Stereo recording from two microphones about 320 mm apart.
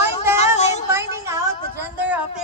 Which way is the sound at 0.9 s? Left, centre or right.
Centre.